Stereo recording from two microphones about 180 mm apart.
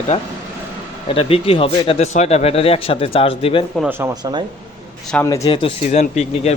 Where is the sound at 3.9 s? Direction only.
10° right (ahead or behind).